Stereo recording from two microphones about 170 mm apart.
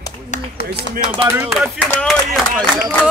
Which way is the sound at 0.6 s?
65° left (ahead or behind).